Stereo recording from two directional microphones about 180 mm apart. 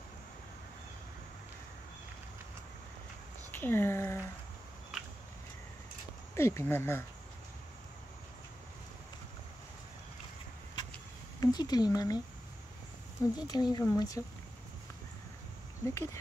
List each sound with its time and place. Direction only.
3.5 s speech: 10° left (ahead or behind)
6.3 s speech: 15° left (ahead or behind)
11.3 s speech: 20° left (ahead or behind)
13.2 s speech: 20° left (ahead or behind)
15.8 s speech: 15° left (ahead or behind)